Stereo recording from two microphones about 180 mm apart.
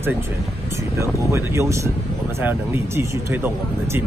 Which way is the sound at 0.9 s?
15° right (ahead or behind).